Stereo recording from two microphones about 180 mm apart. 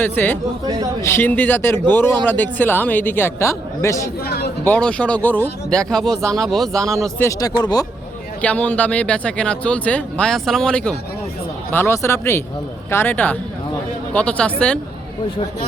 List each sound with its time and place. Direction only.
0.0 s speech: 10° left (ahead or behind)
4.2 s speech: 60° left (ahead or behind)
4.6 s speech: 10° left (ahead or behind)
7.2 s speech: 20° left (ahead or behind)
8.4 s speech: 10° left (ahead or behind)